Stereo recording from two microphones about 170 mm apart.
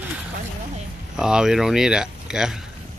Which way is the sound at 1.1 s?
5° right (ahead or behind).